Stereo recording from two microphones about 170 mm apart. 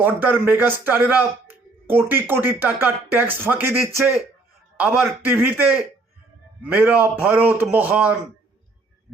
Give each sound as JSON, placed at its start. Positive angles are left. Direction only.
{"t": 0.0, "sound": "a man's voice", "side_deg": -10}
{"t": 6.7, "sound": "a man's voice", "side_deg": -10}